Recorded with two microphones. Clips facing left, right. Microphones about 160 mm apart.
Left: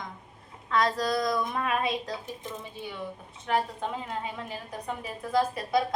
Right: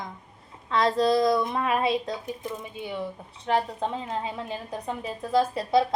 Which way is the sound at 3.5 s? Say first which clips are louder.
Right 3 dB; 30° right (ahead or behind).